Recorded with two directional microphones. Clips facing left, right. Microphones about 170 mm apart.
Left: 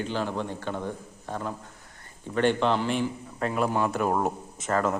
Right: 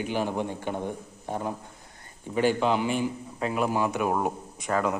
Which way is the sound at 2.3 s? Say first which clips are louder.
Even; 5° right (ahead or behind).